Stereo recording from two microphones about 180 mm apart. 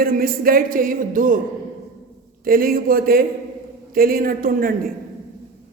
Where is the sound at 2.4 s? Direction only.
55° right (ahead or behind).